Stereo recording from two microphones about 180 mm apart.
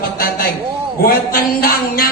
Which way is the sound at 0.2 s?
55° left (ahead or behind).